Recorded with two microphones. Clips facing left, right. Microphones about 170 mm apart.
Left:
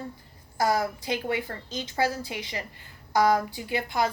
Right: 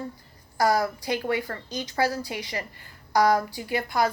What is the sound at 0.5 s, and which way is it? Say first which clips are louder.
A woman's voice: right 2 dB; 20° left (ahead or behind).